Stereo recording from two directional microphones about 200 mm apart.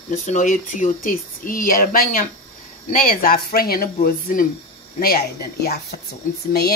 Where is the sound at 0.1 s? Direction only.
40° left (ahead or behind).